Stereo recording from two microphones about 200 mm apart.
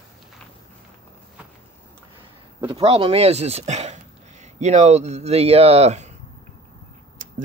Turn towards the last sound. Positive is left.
turn(degrees=-35)  # may be behind; listen again after turning